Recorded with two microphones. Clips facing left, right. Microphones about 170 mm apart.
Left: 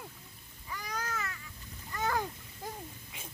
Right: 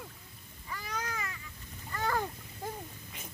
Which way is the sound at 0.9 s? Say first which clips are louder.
Even; 10° right (ahead or behind).